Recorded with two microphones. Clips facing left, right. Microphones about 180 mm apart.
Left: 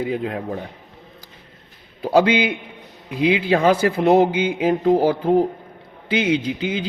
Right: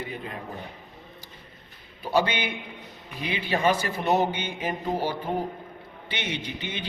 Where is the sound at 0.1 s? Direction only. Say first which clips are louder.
Left 12 dB; 90° left.